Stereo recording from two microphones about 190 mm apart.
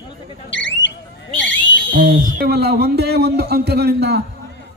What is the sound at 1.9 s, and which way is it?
Speech, 45° right (ahead or behind).